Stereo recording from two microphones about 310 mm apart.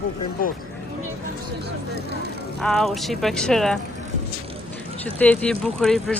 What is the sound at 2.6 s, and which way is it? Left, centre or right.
Speech, centre.